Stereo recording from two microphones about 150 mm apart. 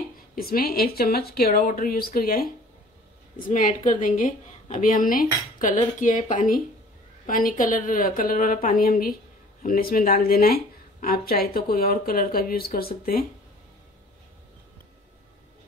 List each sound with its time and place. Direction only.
0.4 s a woman's voice: 80° left
3.3 s a woman's voice: 65° left (ahead or behind)